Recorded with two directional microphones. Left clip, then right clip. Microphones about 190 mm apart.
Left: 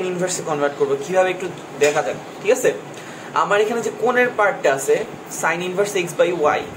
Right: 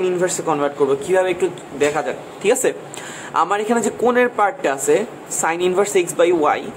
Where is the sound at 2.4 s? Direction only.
50° right (ahead or behind).